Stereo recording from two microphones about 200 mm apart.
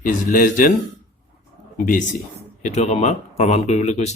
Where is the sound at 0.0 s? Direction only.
45° left (ahead or behind).